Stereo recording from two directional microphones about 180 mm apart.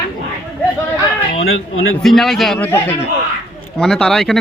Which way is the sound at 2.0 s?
Centre (ahead or behind).